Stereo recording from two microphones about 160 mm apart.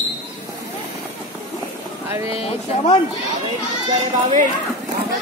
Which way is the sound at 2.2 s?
35° left (ahead or behind).